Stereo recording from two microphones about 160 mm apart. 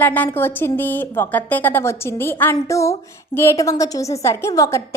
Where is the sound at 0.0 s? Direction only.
10° left (ahead or behind).